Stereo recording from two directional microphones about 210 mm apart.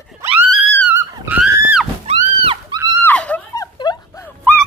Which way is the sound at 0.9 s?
10° right (ahead or behind).